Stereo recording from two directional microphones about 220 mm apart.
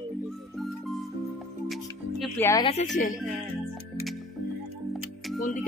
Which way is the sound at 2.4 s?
15° left (ahead or behind).